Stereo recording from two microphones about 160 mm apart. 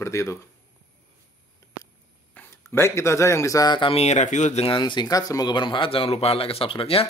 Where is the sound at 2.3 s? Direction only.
15° left (ahead or behind).